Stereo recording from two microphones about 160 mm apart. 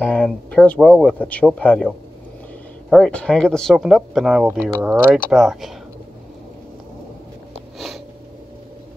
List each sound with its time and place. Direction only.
0.0 s speech: 5° left (ahead or behind)
2.9 s speech: 5° left (ahead or behind)